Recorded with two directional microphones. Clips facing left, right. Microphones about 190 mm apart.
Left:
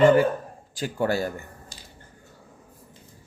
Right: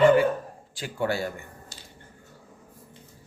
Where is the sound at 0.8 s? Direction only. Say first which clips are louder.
Left 3 dB; 40° left (ahead or behind).